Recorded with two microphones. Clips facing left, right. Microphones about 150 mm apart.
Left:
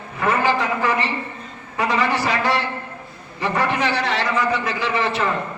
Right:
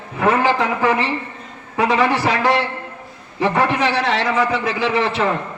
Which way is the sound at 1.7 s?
65° right (ahead or behind).